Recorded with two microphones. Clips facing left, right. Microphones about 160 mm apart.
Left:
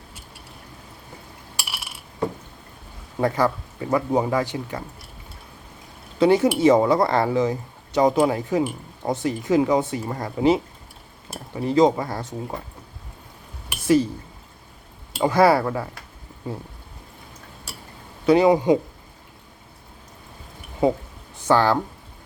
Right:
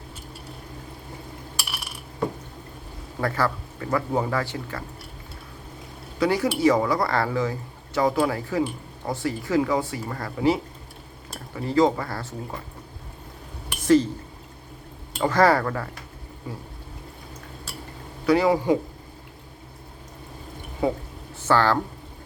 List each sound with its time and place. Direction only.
3.2 s speech: 20° left (ahead or behind)
6.1 s speech: 25° left (ahead or behind)
13.7 s a sound: 10° left (ahead or behind)
15.2 s speech: 10° left (ahead or behind)
18.3 s speech: 20° left (ahead or behind)
20.8 s speech: 20° left (ahead or behind)